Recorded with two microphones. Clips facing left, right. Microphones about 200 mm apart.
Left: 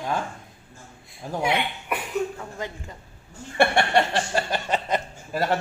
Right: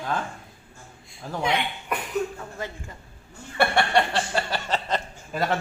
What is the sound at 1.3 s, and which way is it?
A woman's voice, 10° left (ahead or behind).